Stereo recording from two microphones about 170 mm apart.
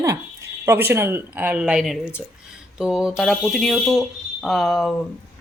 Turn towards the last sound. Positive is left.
turn(degrees=0)  # may be behind; listen again after turning